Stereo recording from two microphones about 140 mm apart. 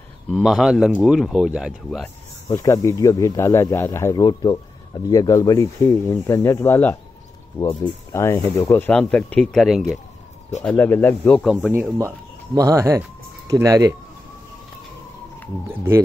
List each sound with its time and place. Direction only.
0.3 s speech: 5° right (ahead or behind)
2.5 s speech: 25° left (ahead or behind)
8.1 s speech: 20° left (ahead or behind)
8.7 s speech: 10° left (ahead or behind)
10.6 s speech: 15° left (ahead or behind)
11.6 s speech: 10° right (ahead or behind)
12.5 s speech: 25° right (ahead or behind)
15.7 s speech: 15° right (ahead or behind)